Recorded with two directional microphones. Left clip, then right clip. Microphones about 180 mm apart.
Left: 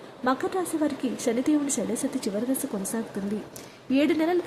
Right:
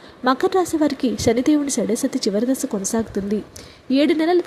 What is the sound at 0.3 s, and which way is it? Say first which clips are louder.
Speech: right 8 dB; 30° right (ahead or behind).